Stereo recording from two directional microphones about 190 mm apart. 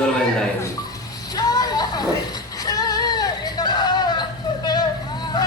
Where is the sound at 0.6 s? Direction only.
20° left (ahead or behind).